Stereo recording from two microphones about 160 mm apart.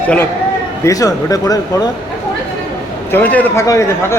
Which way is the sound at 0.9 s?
20° left (ahead or behind).